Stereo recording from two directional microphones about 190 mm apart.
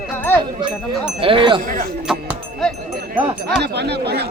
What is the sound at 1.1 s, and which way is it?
Wind chime, 25° right (ahead or behind).